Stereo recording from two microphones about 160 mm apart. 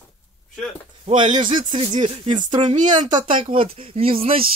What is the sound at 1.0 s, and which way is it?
Speech, 30° right (ahead or behind).